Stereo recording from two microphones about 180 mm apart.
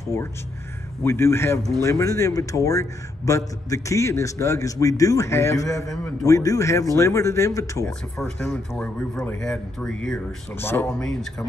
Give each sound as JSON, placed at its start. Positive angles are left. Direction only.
{"t": 0.1, "sound": "a man's voice", "side_deg": 15}